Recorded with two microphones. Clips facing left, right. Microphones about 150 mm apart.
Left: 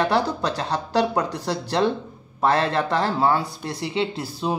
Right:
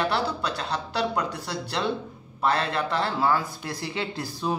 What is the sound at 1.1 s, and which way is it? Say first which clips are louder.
Speech: left 5 dB; 30° left (ahead or behind).